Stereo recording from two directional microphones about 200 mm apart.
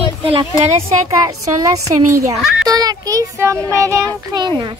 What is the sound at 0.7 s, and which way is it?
A woman's voice, 15° right (ahead or behind).